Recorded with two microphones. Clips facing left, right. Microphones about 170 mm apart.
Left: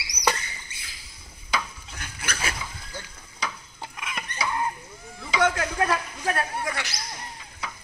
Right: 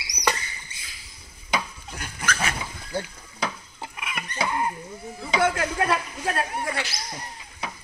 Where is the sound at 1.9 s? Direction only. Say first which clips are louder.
Right 5 dB; 40° right (ahead or behind).